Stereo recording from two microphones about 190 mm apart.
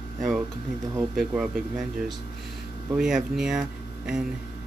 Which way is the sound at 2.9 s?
5° right (ahead or behind).